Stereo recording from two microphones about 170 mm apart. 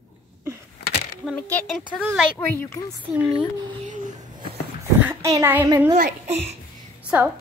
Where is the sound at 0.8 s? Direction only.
60° left (ahead or behind).